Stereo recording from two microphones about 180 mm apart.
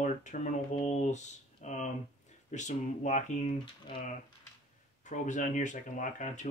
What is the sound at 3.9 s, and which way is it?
Speech, 30° left (ahead or behind).